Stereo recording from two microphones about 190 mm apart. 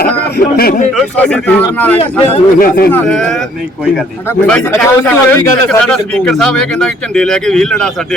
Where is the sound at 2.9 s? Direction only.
5° left (ahead or behind).